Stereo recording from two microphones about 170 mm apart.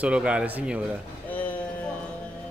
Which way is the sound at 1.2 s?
10° left (ahead or behind).